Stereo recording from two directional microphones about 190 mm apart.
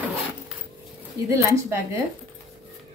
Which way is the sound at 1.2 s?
15° right (ahead or behind).